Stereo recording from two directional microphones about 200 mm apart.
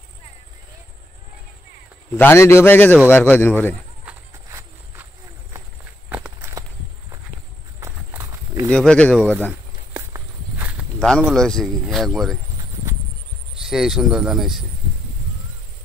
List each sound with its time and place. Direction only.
2.1 s a man's voice: 10° left (ahead or behind)
4.0 s walk: 10° right (ahead or behind)
6.0 s walk: 10° right (ahead or behind)
7.8 s horse: 15° right (ahead or behind)
8.6 s speech: 5° left (ahead or behind)
9.5 s walk: 10° right (ahead or behind)
11.0 s speech: centre (ahead or behind)
13.6 s speech: centre (ahead or behind)